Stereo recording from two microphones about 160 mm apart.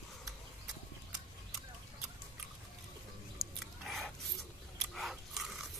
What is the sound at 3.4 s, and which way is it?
Chewing, centre (ahead or behind).